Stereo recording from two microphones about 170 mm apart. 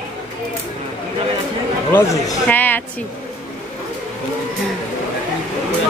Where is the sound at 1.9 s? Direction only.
15° left (ahead or behind).